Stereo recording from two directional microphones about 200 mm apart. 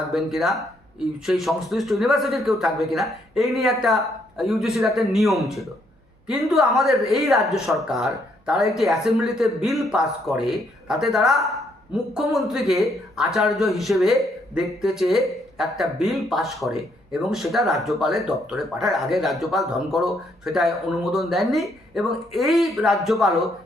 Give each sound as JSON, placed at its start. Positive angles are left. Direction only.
{"t": 0.1, "sound": "a man's voice", "side_deg": 0}